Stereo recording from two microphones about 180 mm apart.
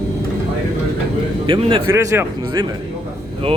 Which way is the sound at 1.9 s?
15° right (ahead or behind).